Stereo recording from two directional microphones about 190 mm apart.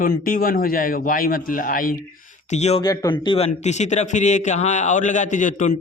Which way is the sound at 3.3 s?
35° left (ahead or behind).